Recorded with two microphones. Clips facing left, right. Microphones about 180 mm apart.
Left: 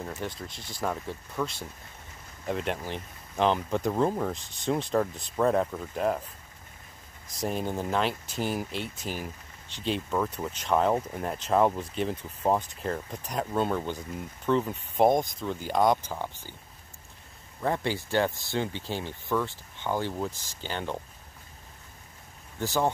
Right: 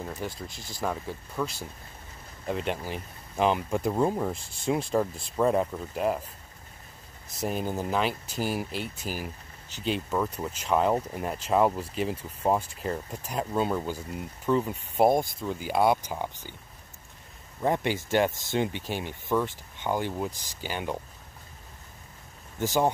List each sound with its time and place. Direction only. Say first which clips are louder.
0.0 s speech: even; 5° right (ahead or behind)
7.3 s speech: even; centre (ahead or behind)
17.6 s speech: right 2 dB; 15° right (ahead or behind)
22.6 s speech: right 2 dB; 15° right (ahead or behind)